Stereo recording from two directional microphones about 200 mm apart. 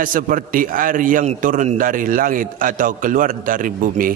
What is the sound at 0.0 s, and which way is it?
A man's voice, 45° right (ahead or behind).